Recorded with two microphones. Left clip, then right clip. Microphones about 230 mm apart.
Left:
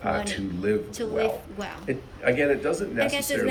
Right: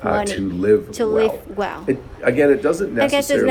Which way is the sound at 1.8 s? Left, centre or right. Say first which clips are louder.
Right 3 dB; right.